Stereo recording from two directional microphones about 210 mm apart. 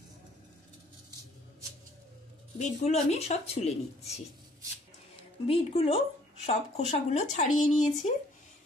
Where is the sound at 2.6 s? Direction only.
35° left (ahead or behind).